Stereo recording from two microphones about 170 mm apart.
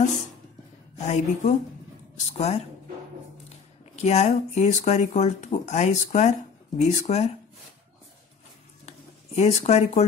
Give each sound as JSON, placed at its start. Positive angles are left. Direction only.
{"t": 1.0, "sound": "a woman's voice", "side_deg": 45}
{"t": 3.9, "sound": "speech", "side_deg": 40}
{"t": 8.8, "sound": "a sound", "side_deg": 40}